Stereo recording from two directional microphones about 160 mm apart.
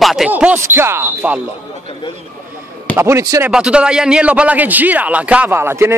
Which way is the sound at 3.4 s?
5° right (ahead or behind).